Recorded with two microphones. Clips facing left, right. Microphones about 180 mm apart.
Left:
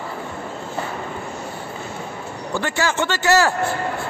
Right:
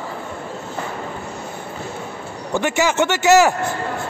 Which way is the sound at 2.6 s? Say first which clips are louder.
Right 4 dB; 20° right (ahead or behind).